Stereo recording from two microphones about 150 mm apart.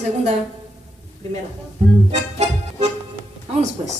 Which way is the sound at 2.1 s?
45° right (ahead or behind).